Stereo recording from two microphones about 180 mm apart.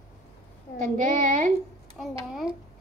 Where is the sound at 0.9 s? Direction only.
40° right (ahead or behind).